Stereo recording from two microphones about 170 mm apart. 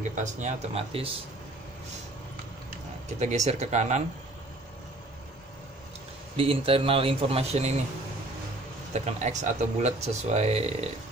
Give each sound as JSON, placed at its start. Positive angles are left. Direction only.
{"t": 0.1, "sound": "speech", "side_deg": -45}
{"t": 3.2, "sound": "speech", "side_deg": -40}
{"t": 6.3, "sound": "speech", "side_deg": -35}
{"t": 8.9, "sound": "speech", "side_deg": -40}